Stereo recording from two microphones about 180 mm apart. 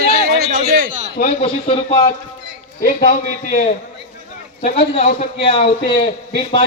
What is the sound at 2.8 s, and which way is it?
Speech, 50° left (ahead or behind).